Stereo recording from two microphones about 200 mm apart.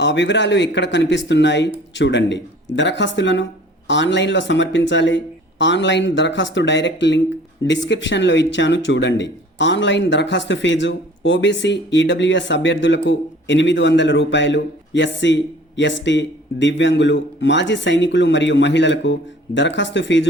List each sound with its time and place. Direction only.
0.0 s speech: 65° left (ahead or behind)